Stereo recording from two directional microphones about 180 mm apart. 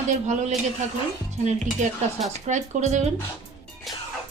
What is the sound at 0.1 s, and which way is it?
A woman's voice, 40° right (ahead or behind).